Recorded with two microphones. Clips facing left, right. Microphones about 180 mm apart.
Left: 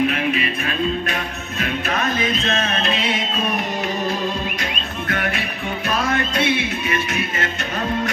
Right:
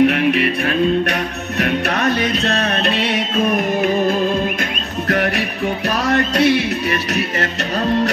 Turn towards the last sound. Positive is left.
turn(degrees=-40)  # may be behind; listen again after turning